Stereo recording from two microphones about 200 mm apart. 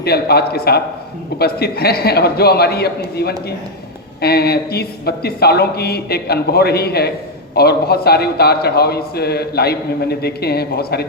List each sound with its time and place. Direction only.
0.0 s a man's voice: 50° left (ahead or behind)